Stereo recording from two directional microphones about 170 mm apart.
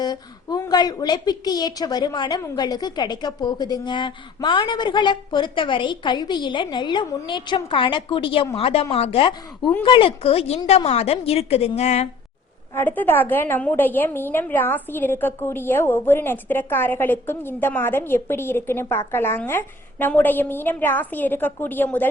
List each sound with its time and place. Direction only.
0.0 s a woman's voice: 25° left (ahead or behind); by 12.0 s 40° left (ahead or behind)
12.7 s a woman's voice: 10° left (ahead or behind)